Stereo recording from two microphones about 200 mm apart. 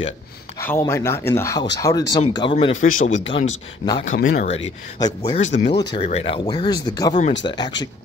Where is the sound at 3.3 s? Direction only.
25° left (ahead or behind).